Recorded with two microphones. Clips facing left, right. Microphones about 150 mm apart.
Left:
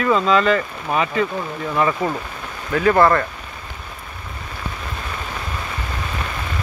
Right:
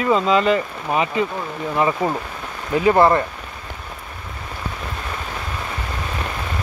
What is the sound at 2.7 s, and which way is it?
Speech, 20° right (ahead or behind).